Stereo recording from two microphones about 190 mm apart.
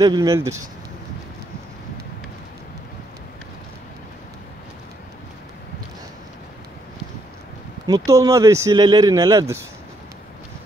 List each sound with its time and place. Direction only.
0.0 s speech: 20° right (ahead or behind)
7.8 s speech: 20° right (ahead or behind)